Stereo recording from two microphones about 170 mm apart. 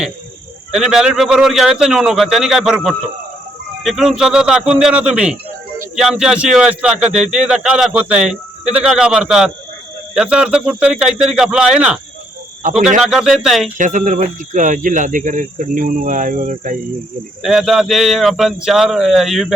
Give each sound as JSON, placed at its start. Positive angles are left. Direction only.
{"t": 0.7, "sound": "a man's voice", "side_deg": -5}
{"t": 13.1, "sound": "a man's voice", "side_deg": -5}
{"t": 13.7, "sound": "speech", "side_deg": -50}
{"t": 17.4, "sound": "a man's voice", "side_deg": 0}